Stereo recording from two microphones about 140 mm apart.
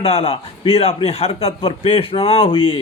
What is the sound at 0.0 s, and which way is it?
A man's voice, 45° left (ahead or behind).